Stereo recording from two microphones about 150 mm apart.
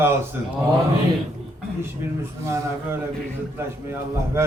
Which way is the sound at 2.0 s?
15° right (ahead or behind).